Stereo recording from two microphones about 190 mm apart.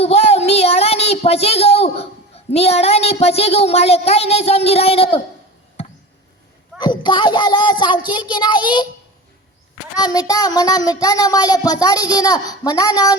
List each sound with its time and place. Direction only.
0.0 s a child's voice: 35° left (ahead or behind)
6.7 s speech: 25° left (ahead or behind)
9.9 s speech: 20° left (ahead or behind)